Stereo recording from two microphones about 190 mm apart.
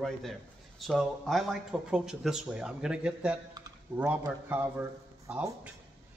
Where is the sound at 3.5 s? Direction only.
15° right (ahead or behind).